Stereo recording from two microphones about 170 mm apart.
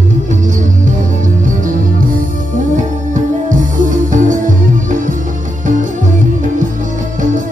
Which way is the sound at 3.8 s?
50° right (ahead or behind).